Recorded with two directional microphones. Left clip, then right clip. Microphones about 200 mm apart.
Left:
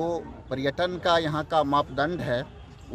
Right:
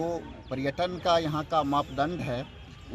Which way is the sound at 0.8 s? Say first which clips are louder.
Left 2 dB; 30° left (ahead or behind).